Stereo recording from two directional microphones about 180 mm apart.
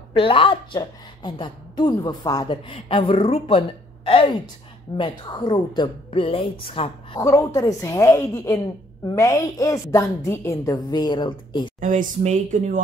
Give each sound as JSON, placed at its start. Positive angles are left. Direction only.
{"t": 0.1, "sound": "a woman's voice", "side_deg": 30}
{"t": 7.2, "sound": "a woman's voice", "side_deg": 15}
{"t": 11.8, "sound": "speech", "side_deg": -45}